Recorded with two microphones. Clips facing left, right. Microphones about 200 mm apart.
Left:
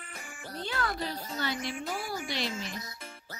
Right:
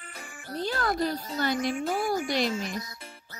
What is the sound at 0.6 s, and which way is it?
Speech, 40° right (ahead or behind).